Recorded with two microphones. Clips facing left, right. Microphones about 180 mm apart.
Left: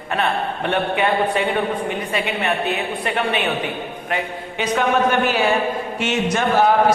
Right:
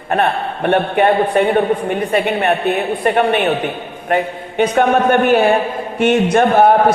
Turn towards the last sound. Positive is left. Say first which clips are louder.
# right 6 dB
turn(degrees=-55)  # may be behind; listen again after turning